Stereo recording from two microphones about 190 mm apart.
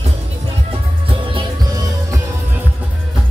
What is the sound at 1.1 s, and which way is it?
Music, 25° right (ahead or behind).